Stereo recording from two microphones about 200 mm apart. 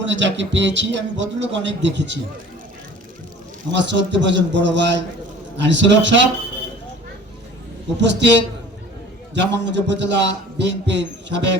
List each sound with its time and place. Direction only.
0.0 s a man's voice: 65° right (ahead or behind)
3.8 s a man's voice: 65° right (ahead or behind)
7.9 s a man's voice: 60° right (ahead or behind)
9.3 s a man's voice: 60° right (ahead or behind)